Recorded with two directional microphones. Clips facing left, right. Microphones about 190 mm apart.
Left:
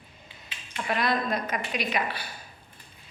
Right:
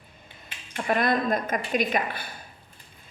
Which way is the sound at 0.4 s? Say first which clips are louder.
Right 4 dB; 50° right (ahead or behind).